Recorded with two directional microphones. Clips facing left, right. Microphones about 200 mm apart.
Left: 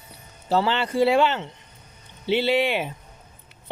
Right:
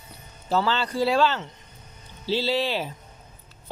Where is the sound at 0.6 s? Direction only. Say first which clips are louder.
Left 4 dB; 25° left (ahead or behind).